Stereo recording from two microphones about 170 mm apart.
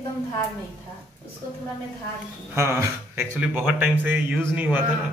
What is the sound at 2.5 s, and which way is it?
Speech, 15° right (ahead or behind).